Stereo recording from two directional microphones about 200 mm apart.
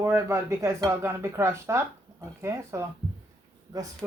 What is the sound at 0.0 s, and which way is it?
Speech, 15° right (ahead or behind).